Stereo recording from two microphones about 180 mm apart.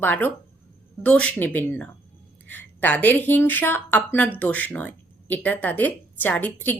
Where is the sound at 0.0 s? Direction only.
10° left (ahead or behind).